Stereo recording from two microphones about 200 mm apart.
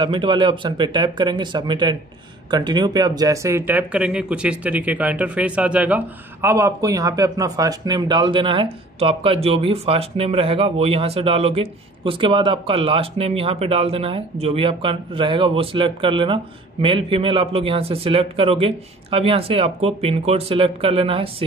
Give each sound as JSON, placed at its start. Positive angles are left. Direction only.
{"t": 0.0, "sound": "speech", "side_deg": -25}